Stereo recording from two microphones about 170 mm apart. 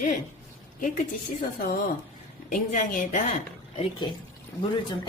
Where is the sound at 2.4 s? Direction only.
50° left (ahead or behind).